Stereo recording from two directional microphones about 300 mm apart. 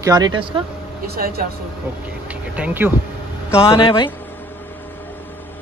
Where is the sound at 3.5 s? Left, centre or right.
Centre.